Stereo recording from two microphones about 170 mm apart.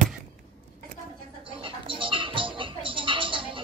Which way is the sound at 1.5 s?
30° right (ahead or behind).